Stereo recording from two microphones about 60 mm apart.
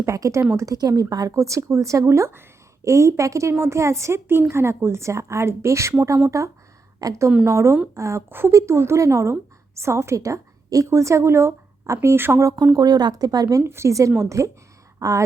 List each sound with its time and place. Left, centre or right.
0.0 s speech: right
0.5 s speech: right
2.0 s a woman's voice: right
6.3 s a woman's voice: right
12.4 s speech: right
12.7 s speech: right
13.7 s speech: right